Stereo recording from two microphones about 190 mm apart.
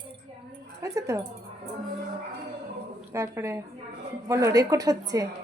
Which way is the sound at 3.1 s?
15° right (ahead or behind).